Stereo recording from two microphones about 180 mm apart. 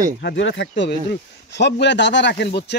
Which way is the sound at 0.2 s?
75° left (ahead or behind).